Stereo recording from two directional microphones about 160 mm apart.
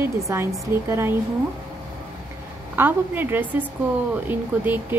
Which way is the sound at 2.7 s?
10° right (ahead or behind).